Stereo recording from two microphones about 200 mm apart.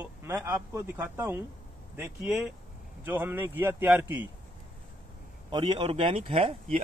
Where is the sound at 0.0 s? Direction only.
10° right (ahead or behind).